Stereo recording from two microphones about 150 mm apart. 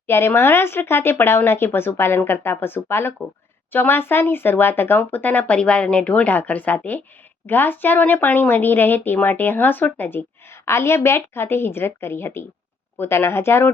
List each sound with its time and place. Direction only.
0.1 s speech: 15° left (ahead or behind)